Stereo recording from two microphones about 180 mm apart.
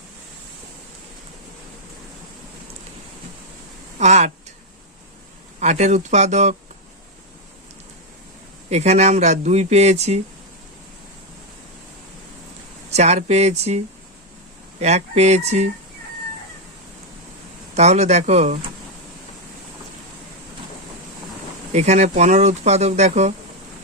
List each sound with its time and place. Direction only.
3.9 s speech: 40° right (ahead or behind)
5.5 s speech: 40° right (ahead or behind)
8.7 s speech: 40° right (ahead or behind)
12.9 s speech: 40° right (ahead or behind)
17.7 s speech: 40° right (ahead or behind)
21.7 s speech: 40° right (ahead or behind)